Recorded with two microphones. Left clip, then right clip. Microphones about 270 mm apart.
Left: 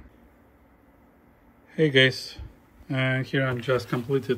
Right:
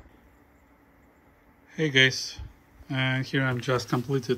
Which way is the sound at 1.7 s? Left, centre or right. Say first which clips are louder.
Left 2 dB; centre.